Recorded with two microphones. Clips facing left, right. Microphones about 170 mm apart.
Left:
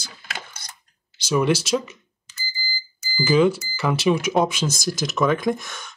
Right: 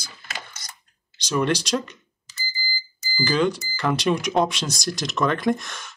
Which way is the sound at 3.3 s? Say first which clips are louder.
Left 5 dB; 5° left (ahead or behind).